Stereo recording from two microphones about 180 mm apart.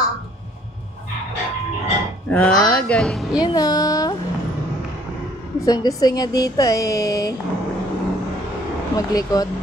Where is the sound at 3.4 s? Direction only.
20° left (ahead or behind).